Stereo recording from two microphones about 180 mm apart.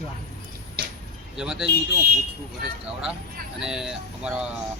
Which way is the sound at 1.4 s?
5° right (ahead or behind).